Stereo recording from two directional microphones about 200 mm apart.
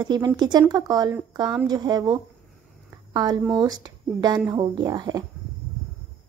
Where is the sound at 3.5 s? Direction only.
20° right (ahead or behind).